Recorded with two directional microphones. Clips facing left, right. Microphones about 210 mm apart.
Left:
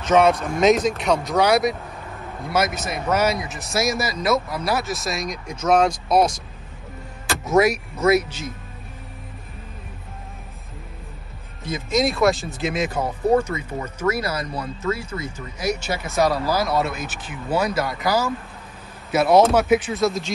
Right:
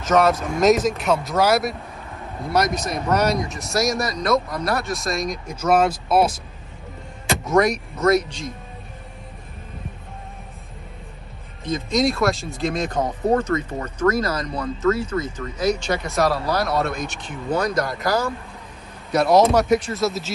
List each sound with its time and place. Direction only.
0.0 s speech: centre (ahead or behind)
7.5 s speech: 5° left (ahead or behind)
11.6 s speech: 5° left (ahead or behind)